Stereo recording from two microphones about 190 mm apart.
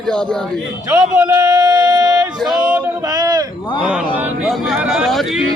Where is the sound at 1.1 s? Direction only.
15° right (ahead or behind).